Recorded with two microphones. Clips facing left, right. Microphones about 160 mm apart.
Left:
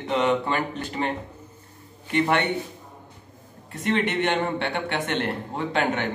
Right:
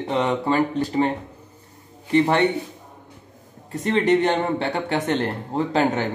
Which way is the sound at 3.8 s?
35° right (ahead or behind).